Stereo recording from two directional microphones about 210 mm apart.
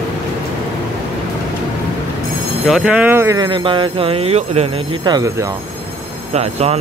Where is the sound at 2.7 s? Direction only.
5° right (ahead or behind).